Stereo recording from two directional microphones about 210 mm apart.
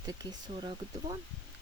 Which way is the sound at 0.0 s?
20° right (ahead or behind).